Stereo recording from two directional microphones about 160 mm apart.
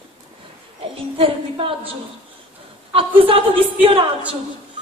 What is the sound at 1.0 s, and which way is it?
A woman's voice, 35° right (ahead or behind).